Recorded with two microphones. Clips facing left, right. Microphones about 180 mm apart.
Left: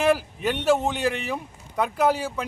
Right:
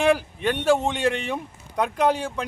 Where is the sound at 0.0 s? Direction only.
5° left (ahead or behind).